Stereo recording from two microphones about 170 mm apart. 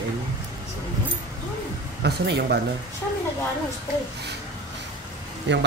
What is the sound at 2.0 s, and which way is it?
Speech, 75° right (ahead or behind).